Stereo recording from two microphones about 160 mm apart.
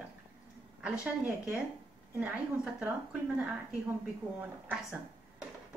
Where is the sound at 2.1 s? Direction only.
10° right (ahead or behind).